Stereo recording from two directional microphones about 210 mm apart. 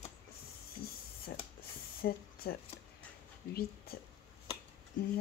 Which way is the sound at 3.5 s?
45° left (ahead or behind).